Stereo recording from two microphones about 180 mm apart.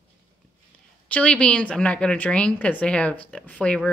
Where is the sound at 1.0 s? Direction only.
5° left (ahead or behind).